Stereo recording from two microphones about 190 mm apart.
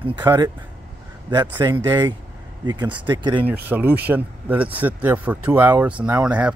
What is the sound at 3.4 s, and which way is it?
Speech, 10° right (ahead or behind).